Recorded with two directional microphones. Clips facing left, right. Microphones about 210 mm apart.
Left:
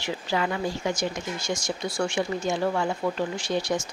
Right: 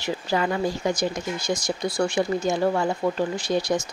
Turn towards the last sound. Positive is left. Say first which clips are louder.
# right 3 dB
turn(degrees=-35)  # may be behind; listen again after turning